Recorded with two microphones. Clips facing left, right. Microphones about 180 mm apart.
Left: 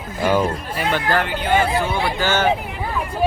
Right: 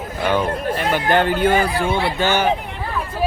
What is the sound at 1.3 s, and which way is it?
Speech, 45° right (ahead or behind).